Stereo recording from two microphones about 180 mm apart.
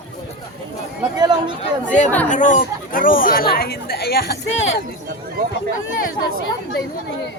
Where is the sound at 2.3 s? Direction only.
45° left (ahead or behind); by 4.8 s 75° left (ahead or behind).